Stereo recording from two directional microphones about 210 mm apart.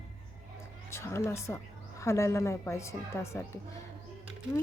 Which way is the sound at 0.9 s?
10° left (ahead or behind).